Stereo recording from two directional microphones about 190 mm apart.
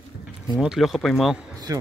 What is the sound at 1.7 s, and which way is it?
Speech, 15° right (ahead or behind).